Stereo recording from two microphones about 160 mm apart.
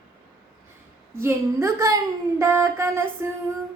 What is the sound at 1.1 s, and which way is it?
Female singing, 15° right (ahead or behind).